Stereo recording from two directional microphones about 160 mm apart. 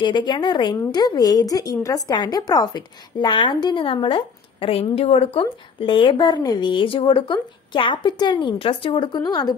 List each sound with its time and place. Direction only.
0.0 s speech: 30° left (ahead or behind)